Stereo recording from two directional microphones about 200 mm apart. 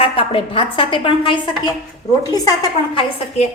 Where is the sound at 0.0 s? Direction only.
25° left (ahead or behind).